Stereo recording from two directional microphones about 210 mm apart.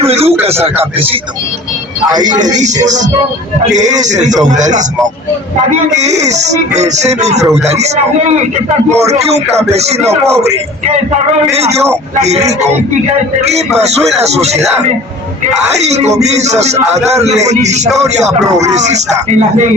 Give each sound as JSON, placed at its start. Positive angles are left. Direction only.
{"t": 0.0, "sound": "speech", "side_deg": -30}
{"t": 2.2, "sound": "speech", "side_deg": -35}
{"t": 6.0, "sound": "speech", "side_deg": -35}
{"t": 9.0, "sound": "speech", "side_deg": -30}
{"t": 11.5, "sound": "speech", "side_deg": -30}